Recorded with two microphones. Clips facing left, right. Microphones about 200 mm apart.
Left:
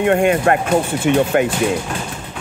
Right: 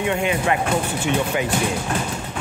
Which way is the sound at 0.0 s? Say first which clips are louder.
Left 7 dB; 55° left (ahead or behind).